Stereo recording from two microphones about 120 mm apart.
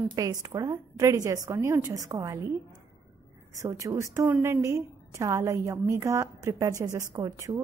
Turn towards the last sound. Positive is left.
turn(degrees=-30)  # may be behind; listen again after turning